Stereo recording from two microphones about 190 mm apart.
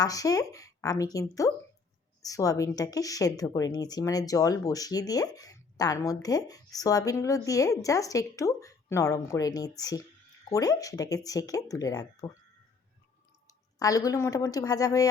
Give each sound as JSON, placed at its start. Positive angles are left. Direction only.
{"t": 0.0, "sound": "speech", "side_deg": 20}
{"t": 13.5, "sound": "speech", "side_deg": 20}